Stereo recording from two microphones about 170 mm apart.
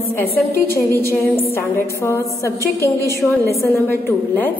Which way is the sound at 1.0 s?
15° left (ahead or behind).